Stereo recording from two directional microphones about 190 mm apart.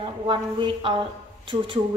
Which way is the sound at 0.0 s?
25° right (ahead or behind).